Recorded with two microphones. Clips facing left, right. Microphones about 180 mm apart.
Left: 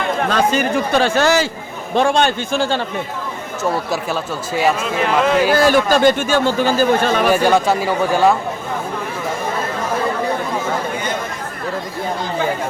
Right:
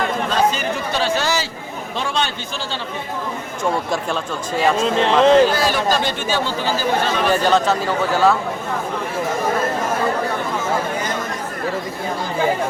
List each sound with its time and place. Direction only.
0.3 s speech: 50° left (ahead or behind)
3.6 s speech: 5° left (ahead or behind)
4.8 s speech: 30° right (ahead or behind)
5.5 s speech: 50° left (ahead or behind)
7.3 s speech: 10° left (ahead or behind)